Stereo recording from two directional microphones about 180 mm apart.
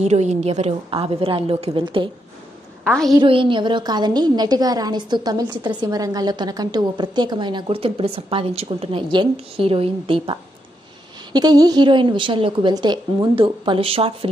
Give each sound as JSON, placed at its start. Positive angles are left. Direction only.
{"t": 0.0, "sound": "a woman's voice", "side_deg": -40}
{"t": 2.8, "sound": "a woman's voice", "side_deg": 5}
{"t": 3.2, "sound": "a woman's voice", "side_deg": -30}